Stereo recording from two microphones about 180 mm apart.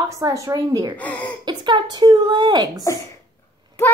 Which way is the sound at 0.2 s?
20° right (ahead or behind).